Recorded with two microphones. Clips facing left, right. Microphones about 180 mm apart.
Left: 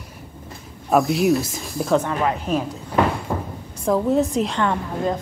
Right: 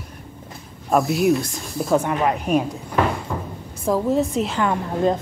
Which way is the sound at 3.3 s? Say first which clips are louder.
Left 2 dB; 40° left (ahead or behind).